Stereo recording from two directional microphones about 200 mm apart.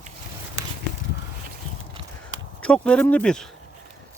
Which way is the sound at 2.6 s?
5° left (ahead or behind).